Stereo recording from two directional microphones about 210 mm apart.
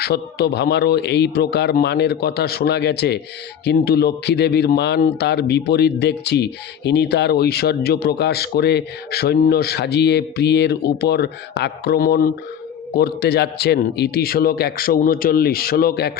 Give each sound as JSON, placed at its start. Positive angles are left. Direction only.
{"t": 0.0, "sound": "a man's voice", "side_deg": 50}